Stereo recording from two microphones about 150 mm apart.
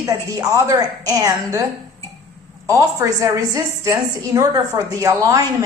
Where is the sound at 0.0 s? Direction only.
20° right (ahead or behind).